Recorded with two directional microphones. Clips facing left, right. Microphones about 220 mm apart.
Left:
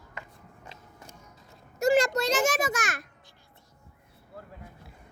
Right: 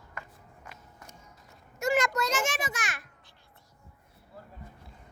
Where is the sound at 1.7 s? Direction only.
35° left (ahead or behind).